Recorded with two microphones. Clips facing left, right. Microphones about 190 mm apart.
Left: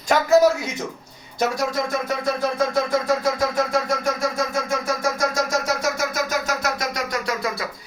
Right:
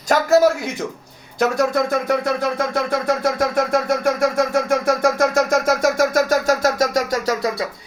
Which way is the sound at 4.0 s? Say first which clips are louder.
Right 6 dB; 60° right (ahead or behind).